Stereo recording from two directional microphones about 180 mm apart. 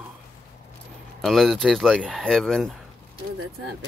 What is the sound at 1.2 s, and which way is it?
Speech, centre (ahead or behind).